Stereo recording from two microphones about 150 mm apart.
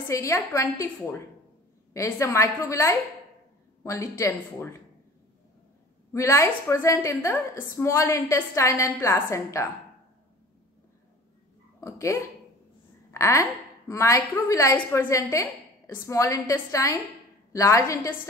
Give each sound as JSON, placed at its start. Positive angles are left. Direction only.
{"t": 0.1, "sound": "a woman's voice", "side_deg": 20}
{"t": 6.1, "sound": "a woman's voice", "side_deg": 20}
{"t": 11.8, "sound": "a woman's voice", "side_deg": 20}